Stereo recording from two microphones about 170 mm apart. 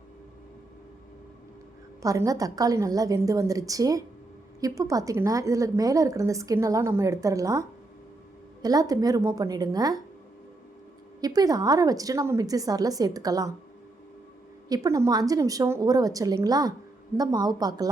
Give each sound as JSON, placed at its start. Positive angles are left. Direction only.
{"t": 2.0, "sound": "a woman's voice", "side_deg": -20}
{"t": 11.2, "sound": "a woman's voice", "side_deg": -20}
{"t": 14.7, "sound": "a woman's voice", "side_deg": -20}